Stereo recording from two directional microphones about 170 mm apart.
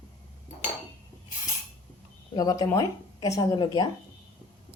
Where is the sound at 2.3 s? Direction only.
20° left (ahead or behind).